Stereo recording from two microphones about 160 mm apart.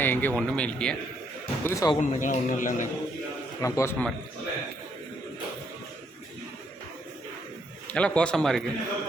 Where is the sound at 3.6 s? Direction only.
20° left (ahead or behind).